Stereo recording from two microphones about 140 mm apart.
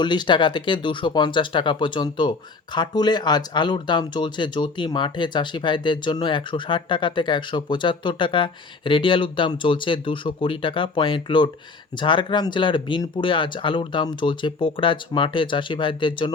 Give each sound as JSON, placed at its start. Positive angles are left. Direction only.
{"t": 0.0, "sound": "speech", "side_deg": 30}